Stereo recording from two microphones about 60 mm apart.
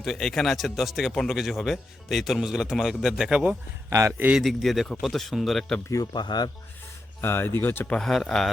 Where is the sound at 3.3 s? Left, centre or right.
Right.